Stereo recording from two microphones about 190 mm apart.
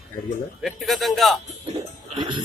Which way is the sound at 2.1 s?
25° right (ahead or behind).